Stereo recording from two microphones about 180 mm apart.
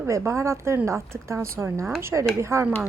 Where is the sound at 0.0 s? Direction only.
15° right (ahead or behind).